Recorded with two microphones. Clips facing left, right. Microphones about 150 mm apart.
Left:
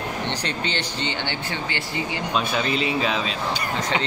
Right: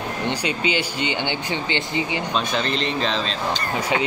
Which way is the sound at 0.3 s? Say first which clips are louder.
Right 4 dB; 10° right (ahead or behind).